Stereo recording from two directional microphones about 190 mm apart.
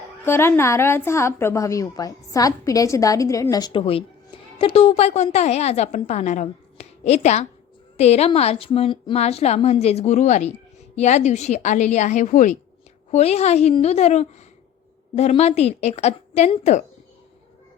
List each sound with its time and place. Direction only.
0.3 s a woman's voice: 10° left (ahead or behind); by 16.8 s 35° left (ahead or behind)